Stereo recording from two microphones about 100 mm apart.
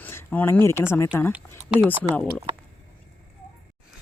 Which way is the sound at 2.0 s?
15° left (ahead or behind).